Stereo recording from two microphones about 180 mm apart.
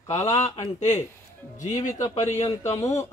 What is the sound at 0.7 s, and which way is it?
Speech, 40° left (ahead or behind).